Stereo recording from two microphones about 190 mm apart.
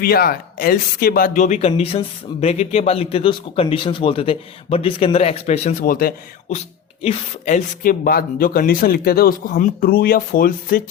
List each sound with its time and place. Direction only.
0.0 s speech: 55° left (ahead or behind); by 5.7 s 35° left (ahead or behind)
5.8 s speech: 50° left (ahead or behind)